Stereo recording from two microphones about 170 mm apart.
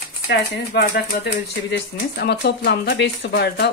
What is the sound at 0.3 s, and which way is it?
Speech, 80° left.